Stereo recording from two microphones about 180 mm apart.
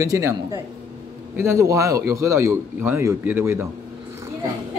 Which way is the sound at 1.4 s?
15° right (ahead or behind).